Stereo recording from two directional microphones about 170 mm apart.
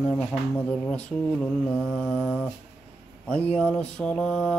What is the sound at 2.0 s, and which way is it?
Mantra, 5° right (ahead or behind).